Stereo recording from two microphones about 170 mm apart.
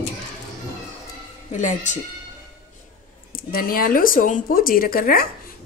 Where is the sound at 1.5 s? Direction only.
45° left (ahead or behind).